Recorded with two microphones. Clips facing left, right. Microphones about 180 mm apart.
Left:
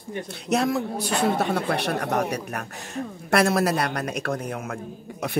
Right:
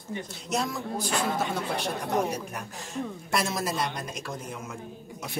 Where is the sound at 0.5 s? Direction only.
65° left (ahead or behind).